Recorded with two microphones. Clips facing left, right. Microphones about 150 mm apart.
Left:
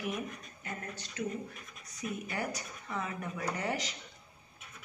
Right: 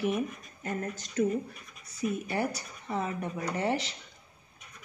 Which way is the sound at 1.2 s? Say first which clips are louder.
Right 10 dB; 45° right (ahead or behind).